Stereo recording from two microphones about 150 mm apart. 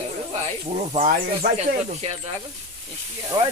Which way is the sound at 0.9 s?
45° right (ahead or behind).